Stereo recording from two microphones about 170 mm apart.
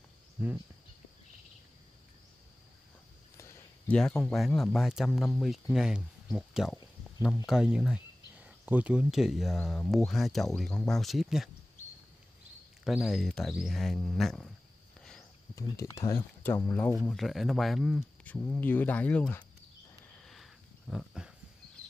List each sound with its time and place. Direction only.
3.3 s speech: 15° left (ahead or behind); by 11.5 s centre (ahead or behind)
12.8 s speech: centre (ahead or behind)
15.0 s cricket: 5° left (ahead or behind)
15.5 s speech: 20° left (ahead or behind)
17.0 s speech: centre (ahead or behind)
20.2 s sniff: centre (ahead or behind)
20.9 s speech: centre (ahead or behind)